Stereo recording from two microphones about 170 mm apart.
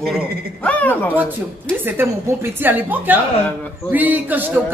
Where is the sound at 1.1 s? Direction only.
10° right (ahead or behind).